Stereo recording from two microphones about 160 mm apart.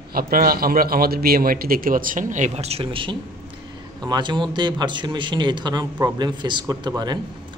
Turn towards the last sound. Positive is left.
turn(degrees=-25)  # may be behind; listen again after turning